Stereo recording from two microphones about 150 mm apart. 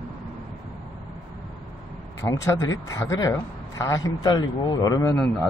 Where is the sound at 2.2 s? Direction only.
20° left (ahead or behind).